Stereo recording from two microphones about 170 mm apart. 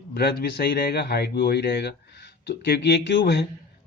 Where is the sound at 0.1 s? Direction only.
70° left (ahead or behind).